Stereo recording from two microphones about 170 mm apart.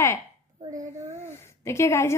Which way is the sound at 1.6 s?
15° left (ahead or behind).